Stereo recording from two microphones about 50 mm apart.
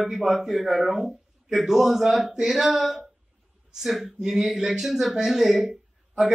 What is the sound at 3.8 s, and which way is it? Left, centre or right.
Speech, centre.